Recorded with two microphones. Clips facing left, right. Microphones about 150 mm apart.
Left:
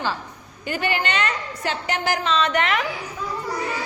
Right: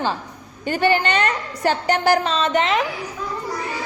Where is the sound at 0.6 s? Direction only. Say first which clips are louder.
Right 6 dB; 30° right (ahead or behind).